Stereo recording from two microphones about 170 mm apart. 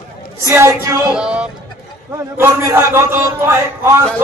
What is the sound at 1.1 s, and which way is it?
Speech, 5° right (ahead or behind).